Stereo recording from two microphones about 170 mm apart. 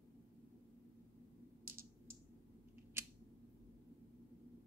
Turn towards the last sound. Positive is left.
turn(degrees=-15)  # may be behind; listen again after turning